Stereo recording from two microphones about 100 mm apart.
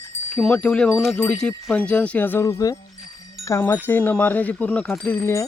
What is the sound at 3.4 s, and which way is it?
Wind chime, 25° left (ahead or behind).